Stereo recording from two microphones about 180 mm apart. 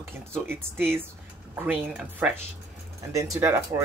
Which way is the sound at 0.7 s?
10° right (ahead or behind).